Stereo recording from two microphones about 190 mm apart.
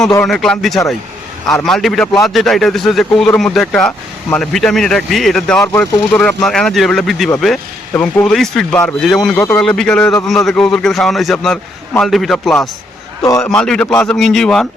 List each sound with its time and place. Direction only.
0.3 s speech: 5° left (ahead or behind)
13.2 s a man's voice: 15° left (ahead or behind)
13.5 s speech: 5° left (ahead or behind)